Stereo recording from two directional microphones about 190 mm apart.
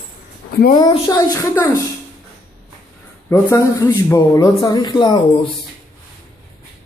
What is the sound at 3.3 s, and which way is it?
A man's voice, 15° left (ahead or behind).